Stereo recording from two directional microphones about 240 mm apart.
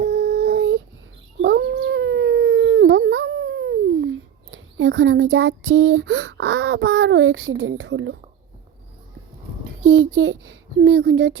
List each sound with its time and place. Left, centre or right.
0.0 s child singing: right
1.4 s dog: right
9.6 s a child's voice: right